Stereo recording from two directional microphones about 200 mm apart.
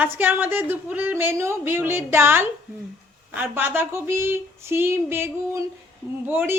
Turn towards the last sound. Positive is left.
turn(degrees=-10)  # may be behind; listen again after turning